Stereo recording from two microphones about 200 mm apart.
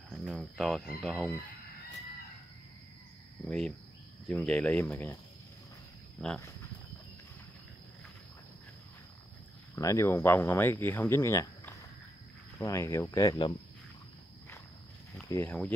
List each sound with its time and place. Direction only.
0.1 s speech: centre (ahead or behind)
3.4 s cricket: 5° left (ahead or behind)
4.3 s speech: 5° left (ahead or behind)
6.2 s speech: 5° left (ahead or behind)
9.8 s speech: 15° left (ahead or behind)
15.2 s speech: 10° left (ahead or behind)